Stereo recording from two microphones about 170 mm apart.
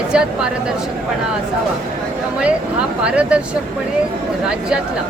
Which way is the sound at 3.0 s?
5° right (ahead or behind).